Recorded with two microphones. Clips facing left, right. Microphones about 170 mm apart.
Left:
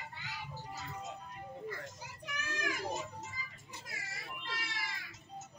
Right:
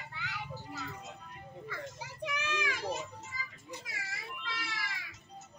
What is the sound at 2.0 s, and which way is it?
Children playing, 90° right.